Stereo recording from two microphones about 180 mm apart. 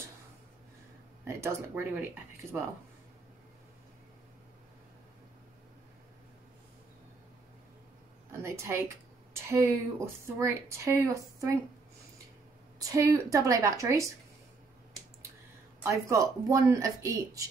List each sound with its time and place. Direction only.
1.2 s speech: 15° right (ahead or behind)
8.3 s speech: 15° right (ahead or behind)
12.8 s speech: 20° right (ahead or behind)
15.8 s speech: 15° right (ahead or behind)